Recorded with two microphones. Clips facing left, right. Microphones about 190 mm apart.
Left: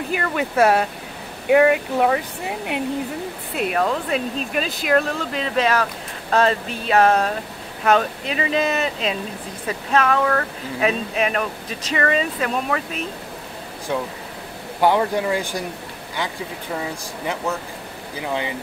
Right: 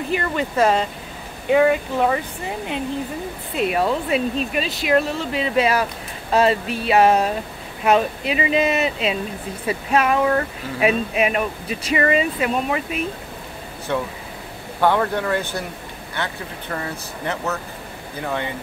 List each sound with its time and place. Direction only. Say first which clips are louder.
0.1 s speech: even; 5° left (ahead or behind)
3.5 s speech: right 1 dB; 5° right (ahead or behind)
13.9 s speech: right 1 dB; 10° left (ahead or behind)
17.4 s speech: left 1 dB; 10° left (ahead or behind)